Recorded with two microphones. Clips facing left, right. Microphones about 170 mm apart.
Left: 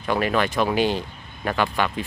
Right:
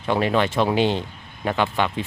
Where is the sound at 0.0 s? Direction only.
25° right (ahead or behind).